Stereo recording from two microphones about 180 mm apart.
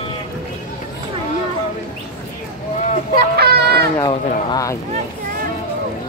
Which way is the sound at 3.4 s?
60° right (ahead or behind).